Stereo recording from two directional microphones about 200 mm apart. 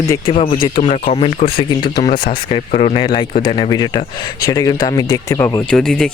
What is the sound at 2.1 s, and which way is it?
Speech, 50° left (ahead or behind).